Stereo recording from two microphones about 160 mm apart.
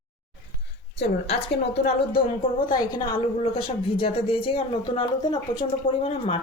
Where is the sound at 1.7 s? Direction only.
80° left.